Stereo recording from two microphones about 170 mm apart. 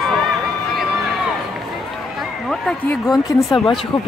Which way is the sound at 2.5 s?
Centre (ahead or behind).